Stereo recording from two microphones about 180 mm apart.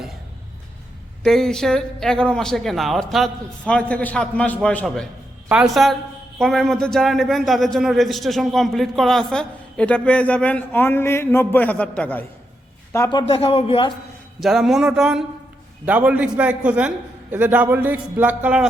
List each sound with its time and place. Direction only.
1.2 s speech: centre (ahead or behind)
13.1 s a man's voice: 30° left (ahead or behind)
14.3 s a man's voice: centre (ahead or behind)